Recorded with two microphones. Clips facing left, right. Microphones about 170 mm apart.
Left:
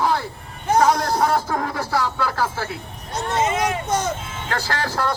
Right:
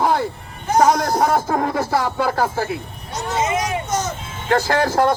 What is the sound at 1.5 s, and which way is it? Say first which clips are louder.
Music: right 4 dB; 35° right (ahead or behind).